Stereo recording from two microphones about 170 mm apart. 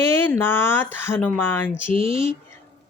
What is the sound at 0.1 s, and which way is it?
Speech, 15° left (ahead or behind).